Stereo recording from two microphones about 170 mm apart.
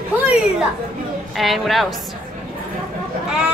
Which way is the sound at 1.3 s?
Centre (ahead or behind).